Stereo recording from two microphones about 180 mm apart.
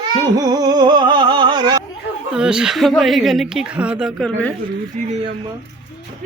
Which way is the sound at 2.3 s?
5° right (ahead or behind).